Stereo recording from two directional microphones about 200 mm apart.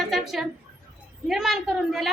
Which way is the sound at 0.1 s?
Centre (ahead or behind).